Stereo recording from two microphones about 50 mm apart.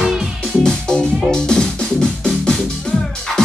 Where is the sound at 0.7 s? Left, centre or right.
Centre.